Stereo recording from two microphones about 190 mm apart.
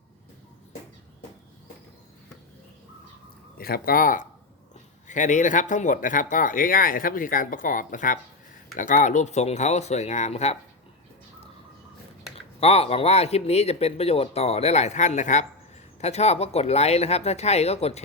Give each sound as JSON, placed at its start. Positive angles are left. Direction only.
{"t": 3.6, "sound": "speech", "side_deg": 50}
{"t": 12.5, "sound": "speech", "side_deg": 30}